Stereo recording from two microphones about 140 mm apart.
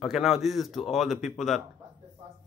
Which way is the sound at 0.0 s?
Centre (ahead or behind).